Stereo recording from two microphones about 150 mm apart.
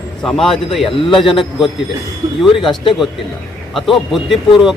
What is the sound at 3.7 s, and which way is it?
Speech, centre (ahead or behind).